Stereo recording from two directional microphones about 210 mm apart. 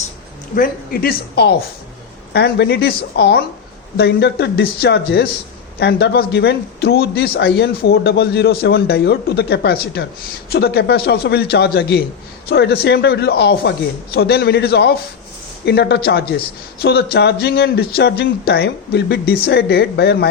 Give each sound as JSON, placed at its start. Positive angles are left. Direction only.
{"t": 0.5, "sound": "speech", "side_deg": 45}